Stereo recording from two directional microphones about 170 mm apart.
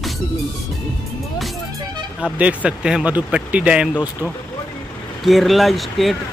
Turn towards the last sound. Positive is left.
turn(degrees=0)  # may be behind; listen again after turning